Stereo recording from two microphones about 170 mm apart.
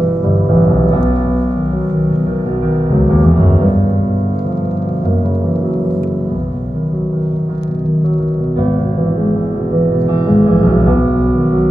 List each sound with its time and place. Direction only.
10.2 s music: 25° left (ahead or behind)